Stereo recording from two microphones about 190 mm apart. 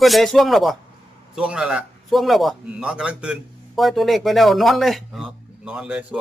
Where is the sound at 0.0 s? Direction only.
Centre (ahead or behind).